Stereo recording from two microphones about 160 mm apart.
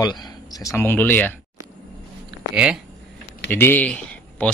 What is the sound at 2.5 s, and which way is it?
Speech, 5° right (ahead or behind).